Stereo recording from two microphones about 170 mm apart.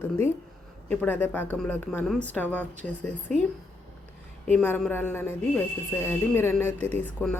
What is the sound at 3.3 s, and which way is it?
Speech, 45° right (ahead or behind).